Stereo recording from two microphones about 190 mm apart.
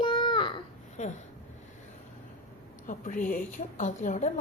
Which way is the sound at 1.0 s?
40° left (ahead or behind).